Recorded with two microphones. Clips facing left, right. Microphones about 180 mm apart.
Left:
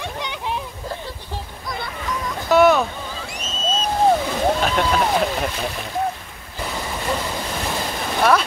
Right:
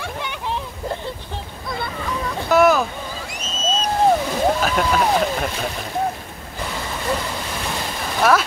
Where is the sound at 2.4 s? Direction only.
Centre (ahead or behind).